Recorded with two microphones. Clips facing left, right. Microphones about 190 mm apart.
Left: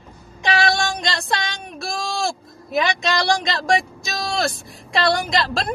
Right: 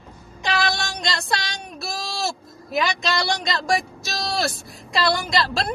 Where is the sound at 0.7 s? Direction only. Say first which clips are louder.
Left 4 dB; centre (ahead or behind).